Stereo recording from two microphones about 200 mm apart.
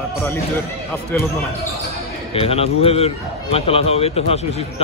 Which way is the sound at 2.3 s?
30° left (ahead or behind).